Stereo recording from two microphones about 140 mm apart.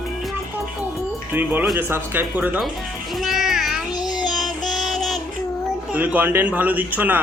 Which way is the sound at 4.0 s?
30° left (ahead or behind).